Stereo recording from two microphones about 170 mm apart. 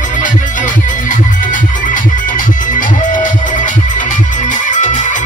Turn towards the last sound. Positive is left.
turn(degrees=45)  # may be behind; listen again after turning